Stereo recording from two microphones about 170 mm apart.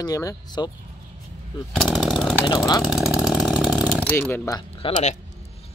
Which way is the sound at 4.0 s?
10° left (ahead or behind).